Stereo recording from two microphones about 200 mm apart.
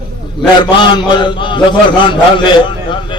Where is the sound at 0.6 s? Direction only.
20° left (ahead or behind).